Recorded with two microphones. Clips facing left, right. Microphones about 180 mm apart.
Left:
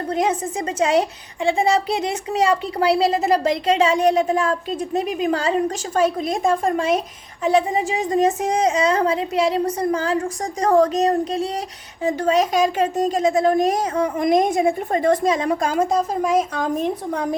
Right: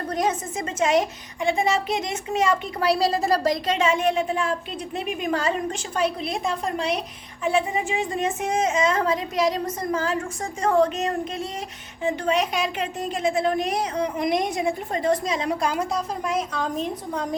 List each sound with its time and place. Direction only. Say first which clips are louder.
0.1 s a child's voice: left 4 dB; 30° left (ahead or behind)
5.9 s a woman's voice: left 5 dB; 45° left (ahead or behind)
7.4 s a child's voice: left 5 dB; 35° left (ahead or behind)